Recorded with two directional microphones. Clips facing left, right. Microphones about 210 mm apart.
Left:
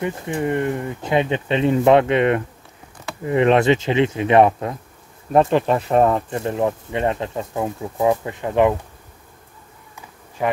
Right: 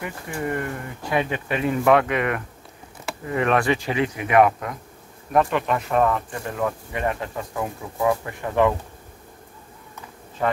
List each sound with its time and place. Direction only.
0.0 s speech: 20° left (ahead or behind)
10.4 s speech: 10° left (ahead or behind)